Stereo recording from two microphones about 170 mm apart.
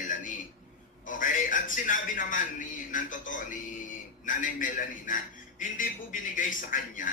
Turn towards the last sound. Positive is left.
turn(degrees=50)  # may be behind; listen again after turning